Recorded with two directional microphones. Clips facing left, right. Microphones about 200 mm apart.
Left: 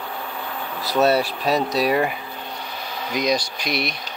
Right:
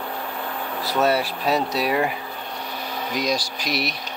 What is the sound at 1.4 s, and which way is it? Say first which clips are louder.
Speech: left 2 dB; 15° left (ahead or behind).